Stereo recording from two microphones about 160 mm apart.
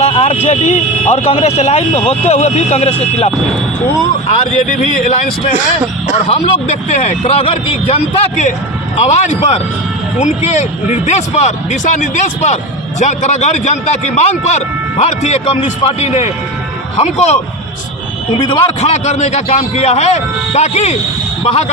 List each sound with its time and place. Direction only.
0.0 s a sound: 40° left (ahead or behind)
0.4 s a man's voice: 40° left (ahead or behind)
4.3 s a man's voice: 50° left (ahead or behind)
6.2 s a man's voice: 40° left (ahead or behind)
18.5 s a man's voice: 45° left (ahead or behind)